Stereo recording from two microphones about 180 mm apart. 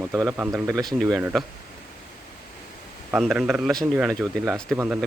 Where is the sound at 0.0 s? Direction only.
15° right (ahead or behind).